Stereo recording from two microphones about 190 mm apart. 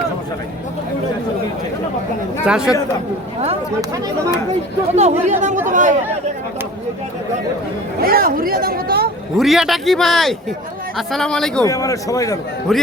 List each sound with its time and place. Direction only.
2.4 s a man's voice: 5° right (ahead or behind)
4.9 s speech: 35° right (ahead or behind)
8.0 s speech: 50° right (ahead or behind)
9.4 s a man's voice: centre (ahead or behind)
11.6 s a man's voice: 15° left (ahead or behind)
12.7 s a man's voice: centre (ahead or behind)